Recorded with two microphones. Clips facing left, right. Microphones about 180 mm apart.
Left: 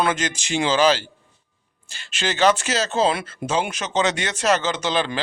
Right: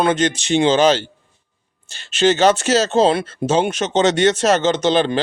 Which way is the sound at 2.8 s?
30° right (ahead or behind).